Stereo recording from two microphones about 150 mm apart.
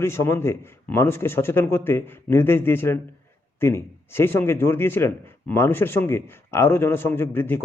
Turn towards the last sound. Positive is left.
turn(degrees=15)  # may be behind; listen again after turning